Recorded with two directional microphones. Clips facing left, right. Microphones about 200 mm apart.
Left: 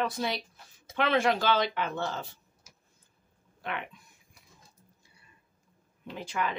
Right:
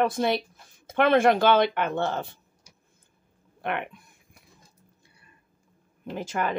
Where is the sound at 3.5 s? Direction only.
60° right (ahead or behind).